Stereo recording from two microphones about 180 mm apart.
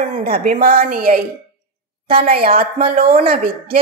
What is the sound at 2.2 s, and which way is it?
Speech, 55° right (ahead or behind).